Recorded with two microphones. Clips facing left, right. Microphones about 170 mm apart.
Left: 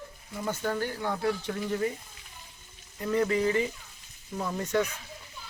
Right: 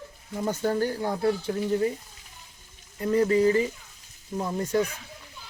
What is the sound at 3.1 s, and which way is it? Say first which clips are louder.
Speech: right 5 dB; 35° right (ahead or behind).